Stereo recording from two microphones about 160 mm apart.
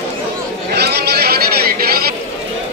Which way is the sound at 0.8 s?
85° right.